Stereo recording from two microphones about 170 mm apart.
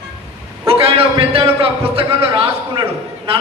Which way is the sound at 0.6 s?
35° right (ahead or behind).